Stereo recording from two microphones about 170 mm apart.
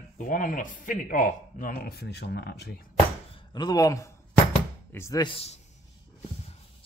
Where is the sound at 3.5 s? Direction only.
25° left (ahead or behind).